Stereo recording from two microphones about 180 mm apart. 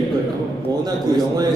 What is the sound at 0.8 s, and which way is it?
Speech, 20° right (ahead or behind).